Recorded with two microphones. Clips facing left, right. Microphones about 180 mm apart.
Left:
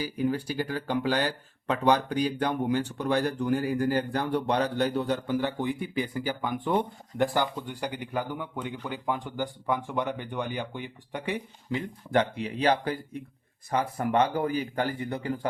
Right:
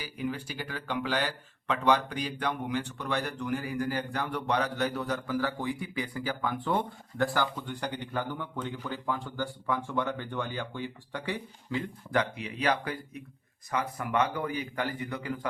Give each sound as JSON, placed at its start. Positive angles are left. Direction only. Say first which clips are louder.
{"t": 0.0, "sound": "speech", "louder": "left 6 dB", "side_deg": 40}